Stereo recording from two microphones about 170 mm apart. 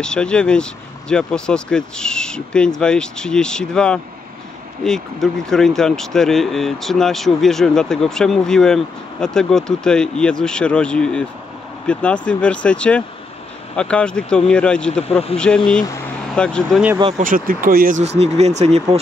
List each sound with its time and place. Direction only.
0.0 s speech: 5° left (ahead or behind)
17.2 s speech: 55° right (ahead or behind)
18.0 s speech: 40° right (ahead or behind)